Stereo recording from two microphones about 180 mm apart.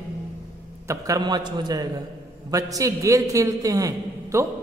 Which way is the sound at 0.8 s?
20° right (ahead or behind).